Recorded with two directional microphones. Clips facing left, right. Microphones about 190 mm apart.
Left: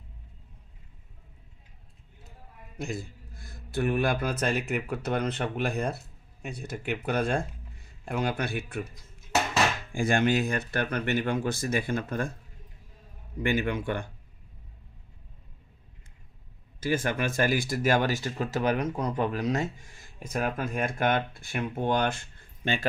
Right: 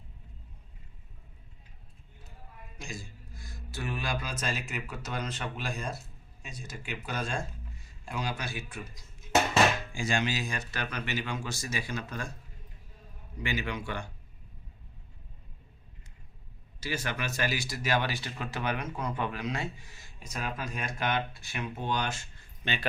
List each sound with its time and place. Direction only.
2.7 s speech: 60° left (ahead or behind)
13.4 s speech: 55° left (ahead or behind)
16.8 s speech: 50° left (ahead or behind)